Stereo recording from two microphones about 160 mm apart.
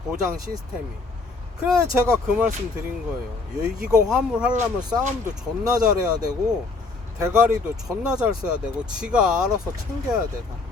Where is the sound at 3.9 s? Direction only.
5° right (ahead or behind).